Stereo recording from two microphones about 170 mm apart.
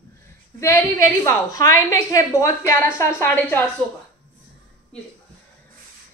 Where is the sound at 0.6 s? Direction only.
15° left (ahead or behind).